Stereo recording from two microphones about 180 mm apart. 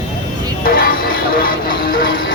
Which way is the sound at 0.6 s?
55° left (ahead or behind).